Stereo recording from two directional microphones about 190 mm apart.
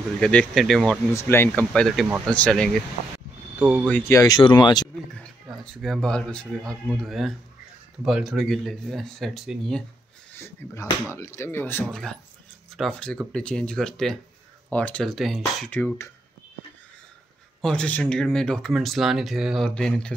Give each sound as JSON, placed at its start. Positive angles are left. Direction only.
{"t": 0.2, "sound": "speech", "side_deg": 5}
{"t": 1.1, "sound": "speech", "side_deg": 10}
{"t": 3.5, "sound": "speech", "side_deg": -10}
{"t": 3.9, "sound": "speech", "side_deg": 15}
{"t": 5.6, "sound": "speech", "side_deg": 5}
{"t": 10.3, "sound": "speech", "side_deg": 15}
{"t": 17.6, "sound": "speech", "side_deg": 5}